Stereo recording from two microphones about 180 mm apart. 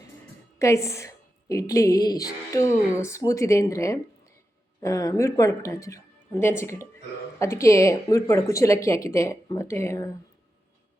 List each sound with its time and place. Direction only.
0.6 s a woman's voice: 15° left (ahead or behind)